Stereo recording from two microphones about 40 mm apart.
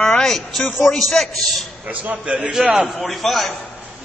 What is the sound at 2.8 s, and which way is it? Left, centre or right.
Speech, centre.